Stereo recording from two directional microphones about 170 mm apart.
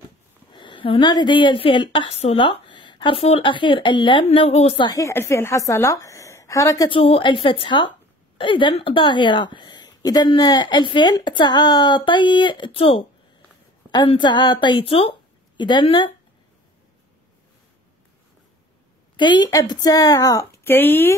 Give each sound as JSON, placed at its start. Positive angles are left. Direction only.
{"t": 0.5, "sound": "a woman's voice", "side_deg": 30}
{"t": 19.1, "sound": "a woman's voice", "side_deg": 25}